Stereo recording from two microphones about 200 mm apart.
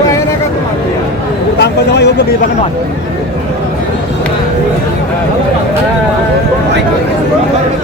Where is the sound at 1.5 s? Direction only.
55° left (ahead or behind).